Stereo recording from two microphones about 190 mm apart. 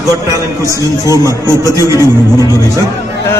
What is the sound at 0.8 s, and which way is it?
Speech, 20° left (ahead or behind).